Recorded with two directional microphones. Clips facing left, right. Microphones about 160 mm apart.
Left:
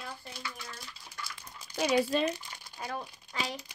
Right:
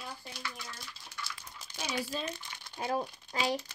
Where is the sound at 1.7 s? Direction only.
70° left (ahead or behind).